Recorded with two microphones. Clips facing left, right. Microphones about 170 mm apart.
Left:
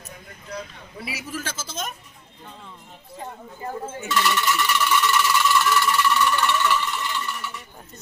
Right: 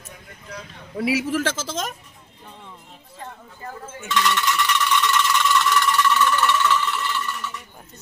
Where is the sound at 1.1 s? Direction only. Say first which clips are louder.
Right 11 dB; 90° right.